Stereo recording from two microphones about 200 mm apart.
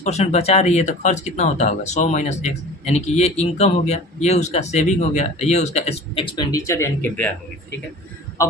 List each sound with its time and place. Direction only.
0.0 s speech: 35° left (ahead or behind)
6.3 s speech: 15° left (ahead or behind)